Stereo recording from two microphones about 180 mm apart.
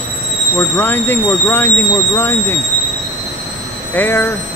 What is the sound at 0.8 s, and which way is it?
Speech, 10° left (ahead or behind).